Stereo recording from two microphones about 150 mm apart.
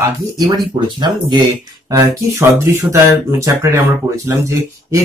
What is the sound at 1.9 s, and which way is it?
Speech, 15° right (ahead or behind).